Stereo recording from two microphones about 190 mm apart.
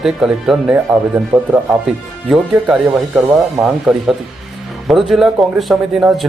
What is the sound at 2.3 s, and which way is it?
A man's voice, 5° right (ahead or behind).